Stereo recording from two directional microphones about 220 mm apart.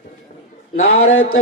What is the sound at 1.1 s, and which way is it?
Speech, 70° left (ahead or behind).